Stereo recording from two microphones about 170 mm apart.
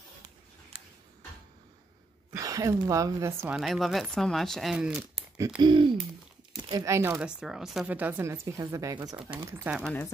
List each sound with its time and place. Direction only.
0.7 s tick-tock: 35° right (ahead or behind)
2.3 s speech: 20° right (ahead or behind)
3.5 s speech: centre (ahead or behind)
5.6 s speech: 30° right (ahead or behind)
9.8 s speech: 5° left (ahead or behind)